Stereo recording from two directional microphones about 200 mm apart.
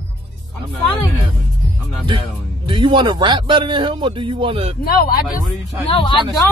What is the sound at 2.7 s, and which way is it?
A man's voice, 25° right (ahead or behind).